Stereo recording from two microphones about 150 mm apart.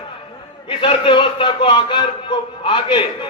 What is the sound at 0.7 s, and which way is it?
A man's voice, 35° left (ahead or behind).